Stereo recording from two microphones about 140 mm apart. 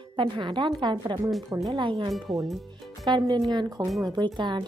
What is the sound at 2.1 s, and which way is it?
Speech, centre (ahead or behind).